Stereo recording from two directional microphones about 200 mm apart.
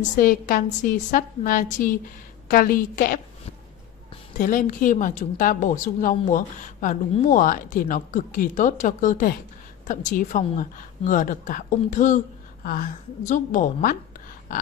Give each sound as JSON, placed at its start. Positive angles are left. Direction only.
{"t": 0.0, "sound": "a woman's voice", "side_deg": 40}
{"t": 4.4, "sound": "a woman's voice", "side_deg": 40}